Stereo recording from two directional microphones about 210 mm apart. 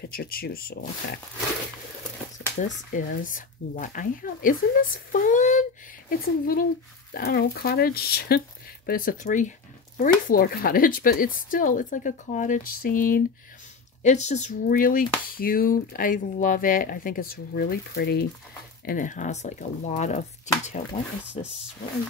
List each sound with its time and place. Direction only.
0.1 s speech: 45° left (ahead or behind)
2.3 s speech: 40° left (ahead or behind)
18.9 s speech: 40° left (ahead or behind)